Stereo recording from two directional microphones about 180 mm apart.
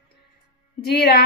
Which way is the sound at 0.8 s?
60° left (ahead or behind).